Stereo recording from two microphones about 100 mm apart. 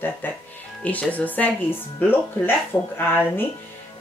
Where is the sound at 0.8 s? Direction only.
15° left (ahead or behind).